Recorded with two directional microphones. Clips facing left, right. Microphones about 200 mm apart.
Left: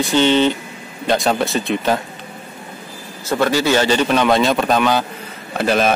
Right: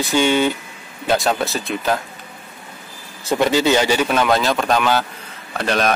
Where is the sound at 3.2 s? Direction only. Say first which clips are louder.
Even; 15° right (ahead or behind).